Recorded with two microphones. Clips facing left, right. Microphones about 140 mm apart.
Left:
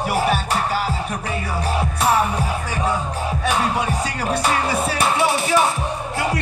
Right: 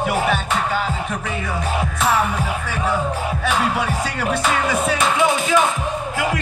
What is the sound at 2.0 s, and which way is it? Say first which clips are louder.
Music: left 1 dB; 30° left (ahead or behind).